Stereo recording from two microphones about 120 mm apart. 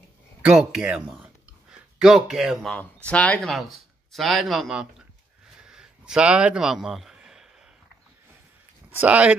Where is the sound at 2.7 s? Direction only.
10° left (ahead or behind); by 5.1 s 5° right (ahead or behind).